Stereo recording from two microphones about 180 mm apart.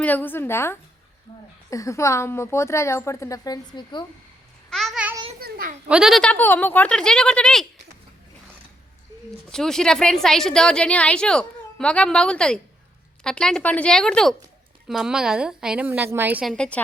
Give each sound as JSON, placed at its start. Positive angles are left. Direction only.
{"t": 0.0, "sound": "a woman's voice", "side_deg": 10}
{"t": 4.7, "sound": "a child's voice", "side_deg": 0}
{"t": 5.4, "sound": "a child's voice", "side_deg": -55}
{"t": 5.9, "sound": "a woman's voice", "side_deg": 0}
{"t": 9.5, "sound": "a woman's voice", "side_deg": 5}